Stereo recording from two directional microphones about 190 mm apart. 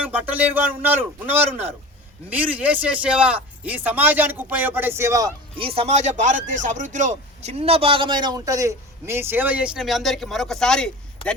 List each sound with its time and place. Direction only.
0.0 s speech: 10° right (ahead or behind)
5.5 s speech: 30° right (ahead or behind); by 11.3 s 5° left (ahead or behind)